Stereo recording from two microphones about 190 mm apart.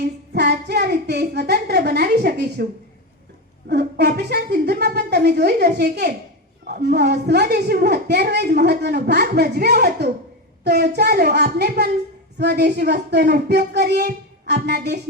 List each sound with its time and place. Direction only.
0.3 s a woman's voice: 60° right (ahead or behind)
3.7 s a woman's voice: 60° right (ahead or behind)